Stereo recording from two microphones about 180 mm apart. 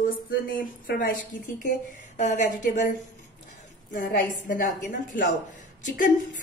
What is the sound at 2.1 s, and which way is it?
A woman's voice, 45° left (ahead or behind).